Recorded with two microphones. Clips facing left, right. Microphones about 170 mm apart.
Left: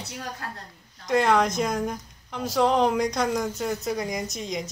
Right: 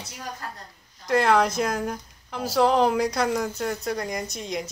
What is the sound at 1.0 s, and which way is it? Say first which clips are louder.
Speech: right 1 dB; centre (ahead or behind).